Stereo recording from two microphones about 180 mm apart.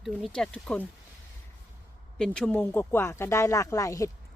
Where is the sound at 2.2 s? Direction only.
5° left (ahead or behind).